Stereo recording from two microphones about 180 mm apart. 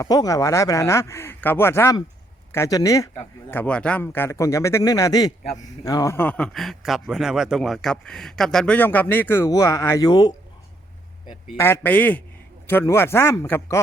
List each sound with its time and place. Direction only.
0.0 s speech: 20° left (ahead or behind)
3.5 s speech: 5° left (ahead or behind)
11.5 s speech: 15° left (ahead or behind)